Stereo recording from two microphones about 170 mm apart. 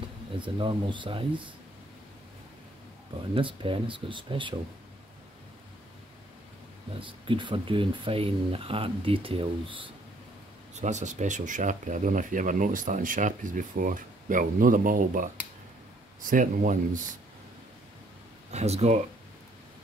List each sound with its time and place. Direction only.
0.4 s speech: 30° right (ahead or behind)
3.3 s speech: 30° right (ahead or behind)
7.0 s speech: 30° right (ahead or behind)
10.7 s speech: 45° right (ahead or behind)
18.5 s speech: 40° right (ahead or behind)